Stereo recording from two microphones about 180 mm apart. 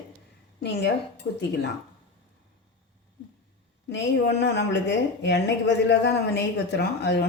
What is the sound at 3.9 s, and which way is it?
Speech, 70° left (ahead or behind).